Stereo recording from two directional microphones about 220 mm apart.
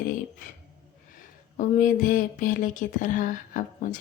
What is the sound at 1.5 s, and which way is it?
Speech, 35° left (ahead or behind).